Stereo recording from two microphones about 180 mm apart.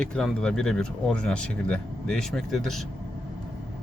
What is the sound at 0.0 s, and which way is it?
Speech, 5° left (ahead or behind).